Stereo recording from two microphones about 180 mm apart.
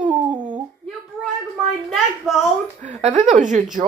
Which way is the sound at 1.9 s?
Centre (ahead or behind).